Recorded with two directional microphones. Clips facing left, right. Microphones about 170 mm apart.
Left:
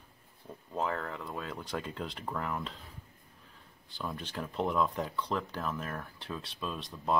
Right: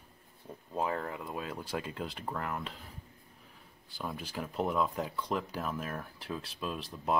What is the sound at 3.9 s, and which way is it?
Speech, 10° right (ahead or behind).